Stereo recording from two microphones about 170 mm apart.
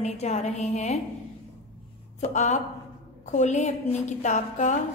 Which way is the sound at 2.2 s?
45° left (ahead or behind).